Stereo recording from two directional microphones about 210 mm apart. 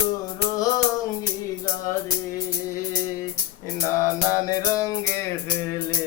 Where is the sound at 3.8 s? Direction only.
15° left (ahead or behind).